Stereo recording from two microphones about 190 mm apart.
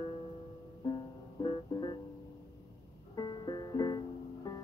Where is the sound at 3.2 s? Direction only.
20° left (ahead or behind).